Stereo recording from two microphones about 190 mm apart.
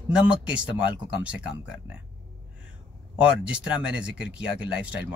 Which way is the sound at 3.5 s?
5° right (ahead or behind).